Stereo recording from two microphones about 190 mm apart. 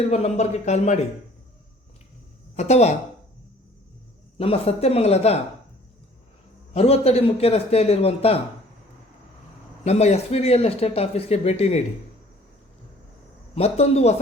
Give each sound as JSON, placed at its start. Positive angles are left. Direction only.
{"t": 0.1, "sound": "speech", "side_deg": 35}
{"t": 2.6, "sound": "speech", "side_deg": 35}
{"t": 4.4, "sound": "speech", "side_deg": 30}
{"t": 6.7, "sound": "speech", "side_deg": 30}
{"t": 9.8, "sound": "speech", "side_deg": 35}
{"t": 13.6, "sound": "speech", "side_deg": 35}